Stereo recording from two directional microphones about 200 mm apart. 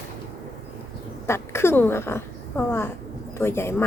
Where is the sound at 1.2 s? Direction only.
15° left (ahead or behind).